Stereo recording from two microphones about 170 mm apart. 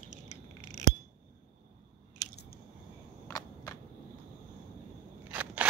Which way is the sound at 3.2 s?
20° left (ahead or behind).